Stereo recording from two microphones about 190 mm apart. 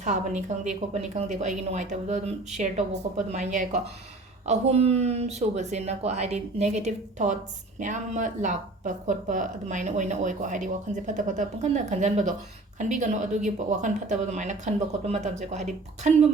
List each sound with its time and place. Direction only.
0.0 s speech: 40° right (ahead or behind)